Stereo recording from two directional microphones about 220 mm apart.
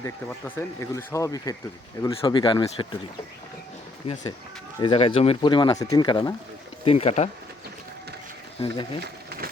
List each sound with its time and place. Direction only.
0.0 s speech: 10° left (ahead or behind)
4.0 s speech: 20° left (ahead or behind)
8.6 s speech: 20° left (ahead or behind)